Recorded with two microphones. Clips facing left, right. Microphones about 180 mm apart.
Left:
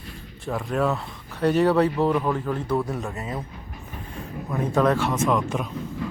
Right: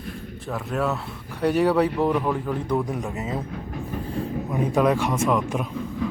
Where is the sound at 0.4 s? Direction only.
Centre (ahead or behind); by 3.4 s 20° right (ahead or behind).